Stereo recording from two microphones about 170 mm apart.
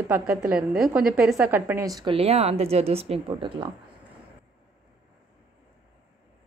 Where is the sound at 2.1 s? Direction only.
35° right (ahead or behind).